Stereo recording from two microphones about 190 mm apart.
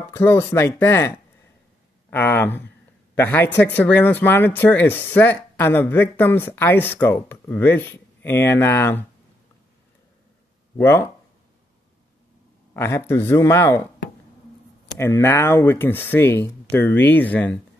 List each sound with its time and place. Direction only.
0.1 s speech: 10° left (ahead or behind)
10.8 s speech: 15° left (ahead or behind)
12.7 s speech: 15° left (ahead or behind)
15.0 s speech: 15° left (ahead or behind)